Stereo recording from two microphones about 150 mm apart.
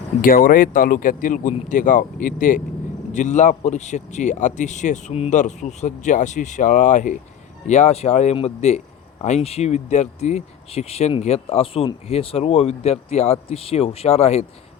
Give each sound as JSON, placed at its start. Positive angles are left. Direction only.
{"t": 0.2, "sound": "speech", "side_deg": 70}